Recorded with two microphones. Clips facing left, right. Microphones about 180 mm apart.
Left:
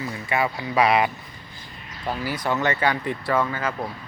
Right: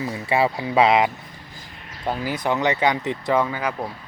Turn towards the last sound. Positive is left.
turn(degrees=-10)  # may be behind; listen again after turning